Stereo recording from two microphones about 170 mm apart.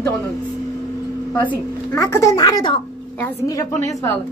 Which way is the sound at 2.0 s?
20° left (ahead or behind).